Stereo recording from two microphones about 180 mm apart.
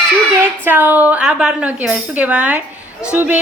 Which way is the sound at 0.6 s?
10° right (ahead or behind).